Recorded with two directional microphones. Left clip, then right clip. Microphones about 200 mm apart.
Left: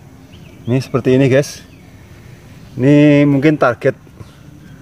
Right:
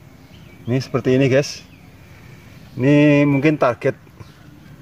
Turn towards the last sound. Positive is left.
turn(degrees=-5)  # may be behind; listen again after turning